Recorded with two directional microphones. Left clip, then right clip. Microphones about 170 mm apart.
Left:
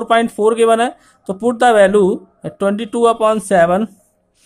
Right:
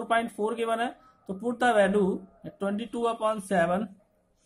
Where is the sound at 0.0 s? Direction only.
35° left (ahead or behind).